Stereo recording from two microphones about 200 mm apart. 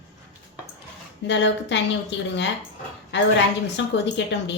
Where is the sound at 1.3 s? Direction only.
60° left (ahead or behind).